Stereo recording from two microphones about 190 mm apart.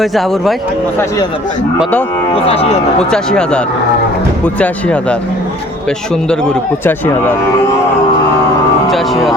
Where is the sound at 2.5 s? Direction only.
35° left (ahead or behind).